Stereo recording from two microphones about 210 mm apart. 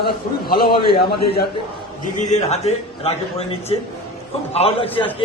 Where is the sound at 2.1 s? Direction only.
35° left (ahead or behind).